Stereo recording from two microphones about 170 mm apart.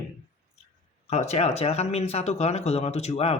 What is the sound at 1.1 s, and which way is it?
Speech, 40° left (ahead or behind).